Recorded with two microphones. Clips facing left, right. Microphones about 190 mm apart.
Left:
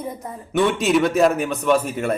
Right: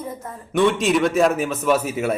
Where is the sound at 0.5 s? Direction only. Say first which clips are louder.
Even; centre (ahead or behind).